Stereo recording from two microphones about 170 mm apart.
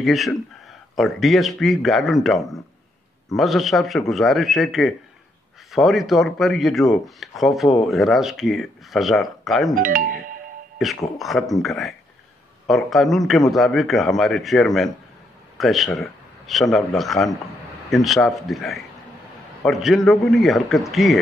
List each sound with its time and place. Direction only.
0.0 s speech: centre (ahead or behind)
9.8 s speech: 55° right (ahead or behind)
10.8 s a man's voice: centre (ahead or behind)